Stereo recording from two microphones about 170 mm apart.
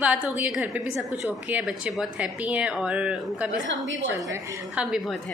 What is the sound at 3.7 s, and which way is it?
Speech, 90° right.